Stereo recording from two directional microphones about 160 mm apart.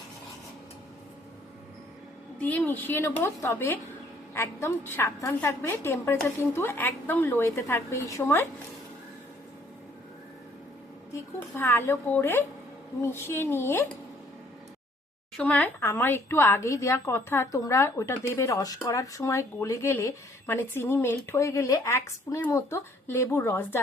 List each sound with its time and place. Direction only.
2.4 s speech: 10° left (ahead or behind)
11.1 s speech: 15° left (ahead or behind)
15.4 s speech: 10° left (ahead or behind)